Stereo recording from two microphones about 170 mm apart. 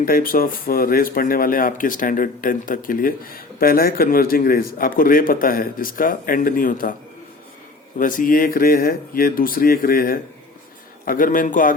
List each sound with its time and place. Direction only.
0.0 s speech: 60° left (ahead or behind)
7.9 s a man's voice: 50° left (ahead or behind)